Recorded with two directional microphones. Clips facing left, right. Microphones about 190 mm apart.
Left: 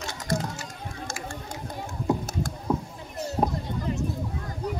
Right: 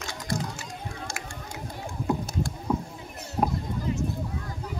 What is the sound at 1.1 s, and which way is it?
Typing, 45° left (ahead or behind).